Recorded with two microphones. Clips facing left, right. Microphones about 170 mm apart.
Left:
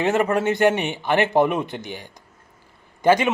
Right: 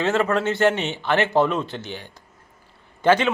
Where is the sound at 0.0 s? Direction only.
15° left (ahead or behind).